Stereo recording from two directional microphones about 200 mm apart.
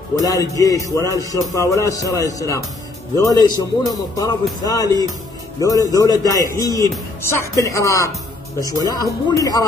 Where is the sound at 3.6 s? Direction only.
20° left (ahead or behind).